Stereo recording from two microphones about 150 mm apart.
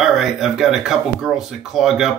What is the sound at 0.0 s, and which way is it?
A man's voice, centre (ahead or behind).